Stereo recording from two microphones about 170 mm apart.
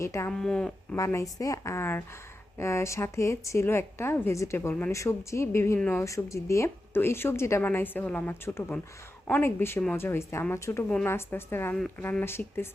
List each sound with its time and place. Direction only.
0.0 s a woman's voice: 15° left (ahead or behind)
0.3 s speech: 5° left (ahead or behind)
0.9 s a woman's voice: 20° left (ahead or behind)